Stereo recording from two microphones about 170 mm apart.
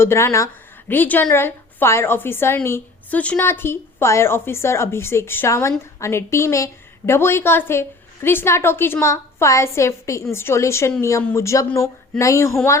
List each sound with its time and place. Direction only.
0.0 s a woman's voice: 15° left (ahead or behind)